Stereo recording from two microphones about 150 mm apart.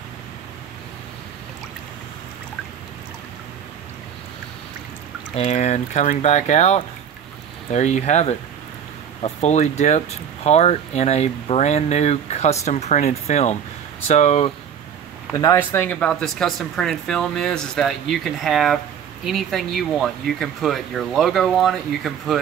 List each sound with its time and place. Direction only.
5.3 s speech: 45° left (ahead or behind)
15.3 s speech: 20° left (ahead or behind); by 22.4 s centre (ahead or behind)